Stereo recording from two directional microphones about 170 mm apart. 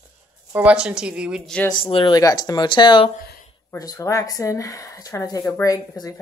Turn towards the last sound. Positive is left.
turn(degrees=20)  # may be behind; listen again after turning